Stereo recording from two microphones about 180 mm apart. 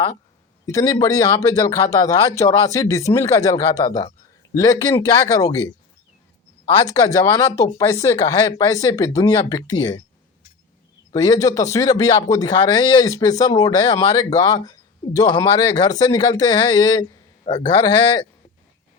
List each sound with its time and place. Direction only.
0.6 s speech: 20° left (ahead or behind)
6.8 s speech: 20° left (ahead or behind)
11.1 s speech: 20° left (ahead or behind)